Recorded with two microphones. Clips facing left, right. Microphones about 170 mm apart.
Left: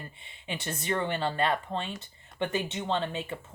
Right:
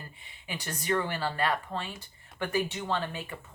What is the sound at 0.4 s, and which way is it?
Speech, 25° left (ahead or behind).